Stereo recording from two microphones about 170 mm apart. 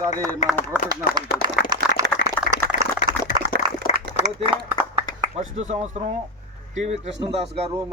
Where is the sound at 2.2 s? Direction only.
90° left.